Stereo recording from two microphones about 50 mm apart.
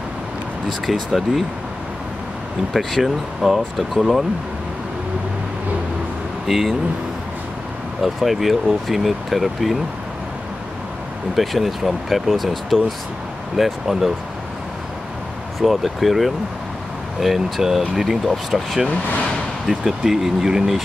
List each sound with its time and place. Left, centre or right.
0.8 s speech: centre
2.7 s speech: centre
6.4 s speech: centre
8.0 s speech: centre
11.3 s speech: centre
15.6 s speech: centre
18.9 s speech: left
19.7 s speech: centre